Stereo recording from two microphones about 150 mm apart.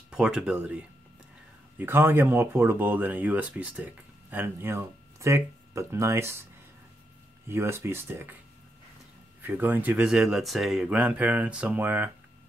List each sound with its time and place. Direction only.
0.1 s speech: 5° right (ahead or behind)
1.8 s speech: 15° right (ahead or behind)
7.4 s speech: 15° right (ahead or behind)
9.4 s speech: 15° right (ahead or behind)